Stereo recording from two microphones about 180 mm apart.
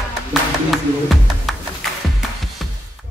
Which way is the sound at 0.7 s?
Centre (ahead or behind).